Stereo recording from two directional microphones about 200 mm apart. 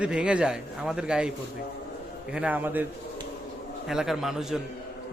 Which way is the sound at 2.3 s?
5° right (ahead or behind).